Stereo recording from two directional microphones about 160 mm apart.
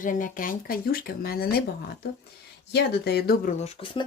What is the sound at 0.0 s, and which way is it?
Speech, 55° left (ahead or behind).